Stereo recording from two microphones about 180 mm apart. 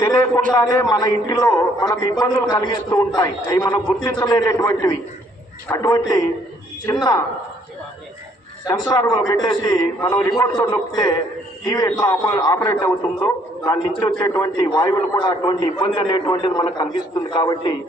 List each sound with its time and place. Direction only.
0.0 s a man's voice: 15° left (ahead or behind)
8.6 s a man's voice: 20° left (ahead or behind)